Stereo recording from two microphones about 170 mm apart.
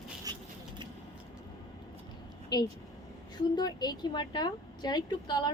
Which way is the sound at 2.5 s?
25° left (ahead or behind).